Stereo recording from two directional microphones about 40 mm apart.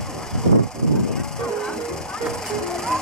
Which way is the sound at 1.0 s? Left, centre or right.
Centre.